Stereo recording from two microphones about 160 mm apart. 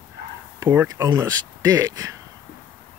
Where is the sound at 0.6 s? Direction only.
20° right (ahead or behind).